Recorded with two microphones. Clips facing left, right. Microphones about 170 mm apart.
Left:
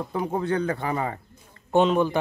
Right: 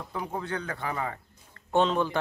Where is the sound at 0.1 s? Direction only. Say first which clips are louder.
Left 7 dB; 30° left (ahead or behind).